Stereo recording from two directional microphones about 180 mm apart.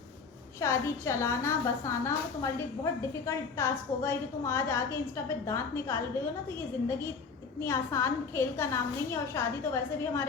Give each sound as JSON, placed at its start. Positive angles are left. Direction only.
{"t": 0.6, "sound": "a woman's voice", "side_deg": 15}
{"t": 7.6, "sound": "a woman's voice", "side_deg": 15}